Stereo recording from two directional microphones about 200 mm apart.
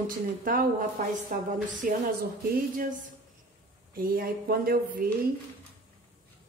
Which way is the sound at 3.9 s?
45° right (ahead or behind).